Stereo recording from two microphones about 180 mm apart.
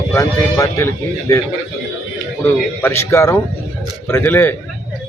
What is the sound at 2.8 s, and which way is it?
Speech, 15° left (ahead or behind).